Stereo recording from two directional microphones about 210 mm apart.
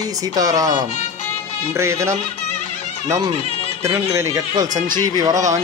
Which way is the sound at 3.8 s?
15° right (ahead or behind).